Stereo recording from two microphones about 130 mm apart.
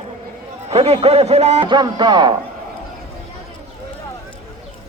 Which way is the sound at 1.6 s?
35° right (ahead or behind).